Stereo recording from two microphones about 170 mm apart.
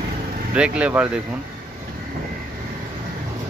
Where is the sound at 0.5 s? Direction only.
5° right (ahead or behind).